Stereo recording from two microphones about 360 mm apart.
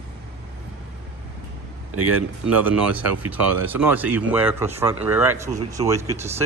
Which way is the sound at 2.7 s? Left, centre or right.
Centre.